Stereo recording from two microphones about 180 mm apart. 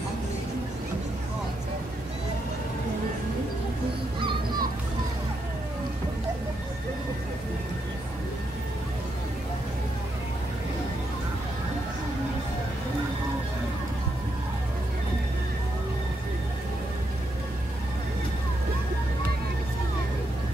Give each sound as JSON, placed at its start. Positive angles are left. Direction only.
{"t": 4.2, "sound": "music", "side_deg": -25}